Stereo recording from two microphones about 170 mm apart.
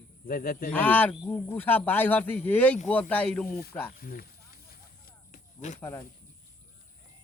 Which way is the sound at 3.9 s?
60° left (ahead or behind).